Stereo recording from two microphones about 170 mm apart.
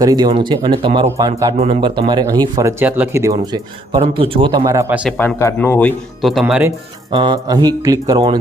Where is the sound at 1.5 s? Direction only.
35° right (ahead or behind).